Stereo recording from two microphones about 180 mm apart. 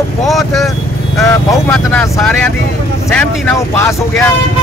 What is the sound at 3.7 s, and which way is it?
Speech, 15° left (ahead or behind).